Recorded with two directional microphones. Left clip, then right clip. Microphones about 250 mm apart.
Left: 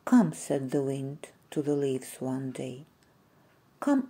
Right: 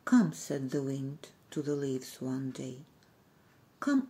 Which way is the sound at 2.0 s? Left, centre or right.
Centre.